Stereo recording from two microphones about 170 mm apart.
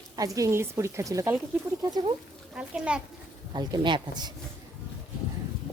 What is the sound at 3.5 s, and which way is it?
Speech, 25° right (ahead or behind).